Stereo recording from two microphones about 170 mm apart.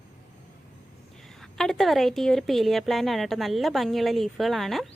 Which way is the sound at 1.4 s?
Centre (ahead or behind).